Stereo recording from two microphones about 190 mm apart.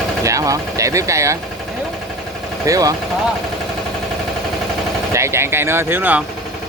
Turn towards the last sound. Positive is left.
turn(degrees=-10)  # may be behind; listen again after turning